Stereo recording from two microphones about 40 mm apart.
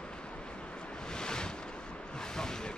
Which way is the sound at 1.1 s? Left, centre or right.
Centre.